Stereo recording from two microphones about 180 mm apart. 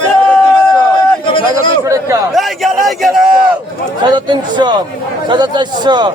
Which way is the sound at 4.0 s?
25° right (ahead or behind).